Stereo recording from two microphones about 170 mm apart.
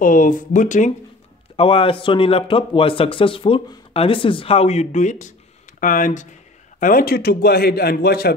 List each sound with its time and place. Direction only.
0.0 s speech: 50° left (ahead or behind)
1.6 s a man's voice: 30° left (ahead or behind); by 8.3 s 65° left (ahead or behind)